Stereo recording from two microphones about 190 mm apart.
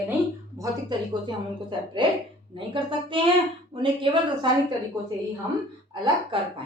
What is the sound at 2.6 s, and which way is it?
A woman's voice, 25° right (ahead or behind).